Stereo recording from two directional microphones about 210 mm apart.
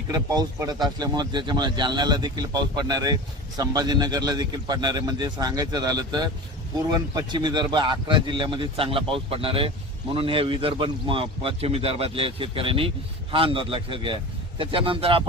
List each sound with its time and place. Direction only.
0.1 s speech: 20° right (ahead or behind)